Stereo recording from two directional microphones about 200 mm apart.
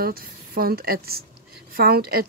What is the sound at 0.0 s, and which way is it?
Speech, 50° right (ahead or behind).